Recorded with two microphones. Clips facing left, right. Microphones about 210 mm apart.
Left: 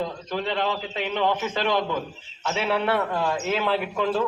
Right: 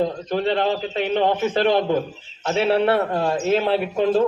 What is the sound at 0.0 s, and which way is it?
A man's voice, 35° right (ahead or behind).